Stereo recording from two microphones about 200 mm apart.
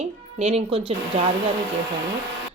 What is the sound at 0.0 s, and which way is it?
A woman's voice, 30° right (ahead or behind).